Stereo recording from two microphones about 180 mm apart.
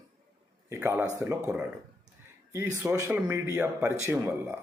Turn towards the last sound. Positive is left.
turn(degrees=-15)  # may be behind; listen again after turning